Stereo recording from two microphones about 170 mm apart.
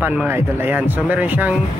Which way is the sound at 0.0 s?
10° right (ahead or behind).